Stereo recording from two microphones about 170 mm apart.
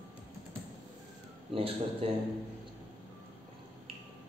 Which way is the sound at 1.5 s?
35° right (ahead or behind).